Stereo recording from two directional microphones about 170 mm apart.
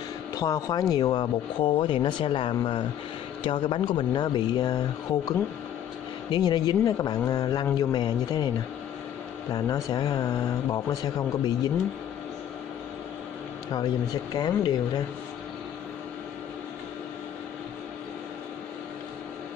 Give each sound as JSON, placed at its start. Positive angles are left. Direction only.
{"t": 0.3, "sound": "speech", "side_deg": 20}
{"t": 6.3, "sound": "speech", "side_deg": 25}
{"t": 9.8, "sound": "speech", "side_deg": 20}
{"t": 14.3, "sound": "speech", "side_deg": 25}